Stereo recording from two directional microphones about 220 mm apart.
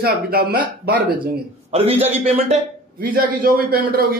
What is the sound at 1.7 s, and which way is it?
Speech, 25° right (ahead or behind).